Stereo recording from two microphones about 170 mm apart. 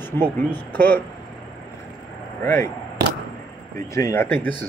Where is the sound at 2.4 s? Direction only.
15° left (ahead or behind).